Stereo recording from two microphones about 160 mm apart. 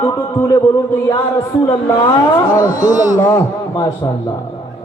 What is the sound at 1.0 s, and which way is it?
Music, 20° left (ahead or behind).